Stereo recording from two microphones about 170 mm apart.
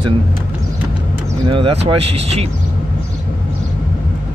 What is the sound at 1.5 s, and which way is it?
Speech, 30° right (ahead or behind).